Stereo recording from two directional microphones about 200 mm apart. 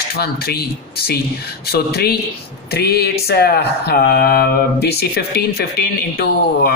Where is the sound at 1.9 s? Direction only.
55° left (ahead or behind).